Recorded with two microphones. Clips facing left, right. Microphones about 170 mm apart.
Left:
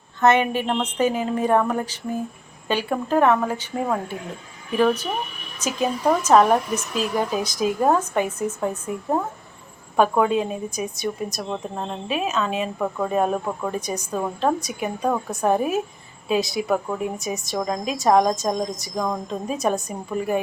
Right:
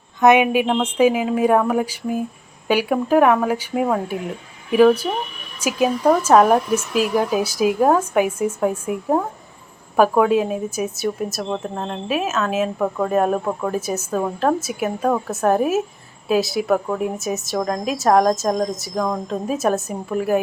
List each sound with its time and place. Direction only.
0.2 s a woman's voice: 15° right (ahead or behind)